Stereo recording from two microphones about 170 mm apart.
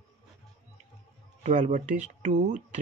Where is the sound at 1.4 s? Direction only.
45° right (ahead or behind).